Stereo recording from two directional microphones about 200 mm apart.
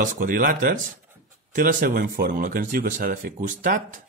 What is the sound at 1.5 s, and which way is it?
Speech, 45° right (ahead or behind).